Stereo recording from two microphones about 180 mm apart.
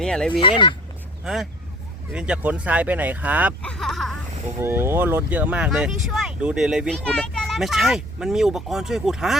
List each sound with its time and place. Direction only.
0.0 s speech: 5° left (ahead or behind)
0.3 s speech: 30° left (ahead or behind)
1.2 s speech: centre (ahead or behind)
3.6 s a sound: 5° left (ahead or behind)
4.6 s speech: 15° right (ahead or behind)